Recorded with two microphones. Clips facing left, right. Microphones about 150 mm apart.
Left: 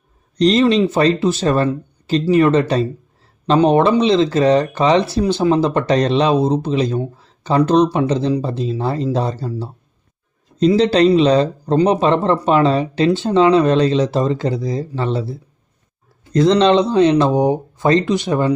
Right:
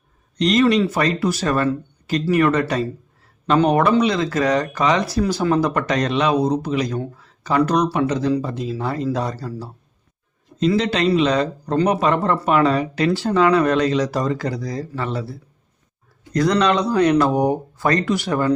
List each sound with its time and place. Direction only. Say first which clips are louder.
0.3 s speech: left 3 dB; 30° left (ahead or behind)
10.8 s speech: left 7 dB; 35° left (ahead or behind)